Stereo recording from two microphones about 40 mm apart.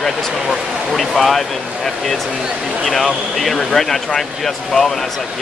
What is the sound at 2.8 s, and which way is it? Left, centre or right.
A man's voice, centre.